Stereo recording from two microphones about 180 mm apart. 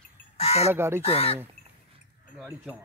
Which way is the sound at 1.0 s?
35° left (ahead or behind).